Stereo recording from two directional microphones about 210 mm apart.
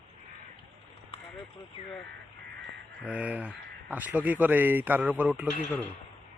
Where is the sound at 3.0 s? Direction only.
5° right (ahead or behind).